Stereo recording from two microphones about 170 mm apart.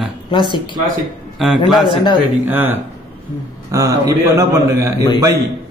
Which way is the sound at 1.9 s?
30° left (ahead or behind).